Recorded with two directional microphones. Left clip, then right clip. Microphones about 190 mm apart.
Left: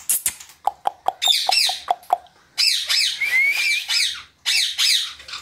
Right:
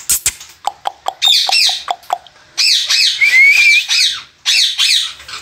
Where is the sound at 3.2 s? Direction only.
20° left (ahead or behind).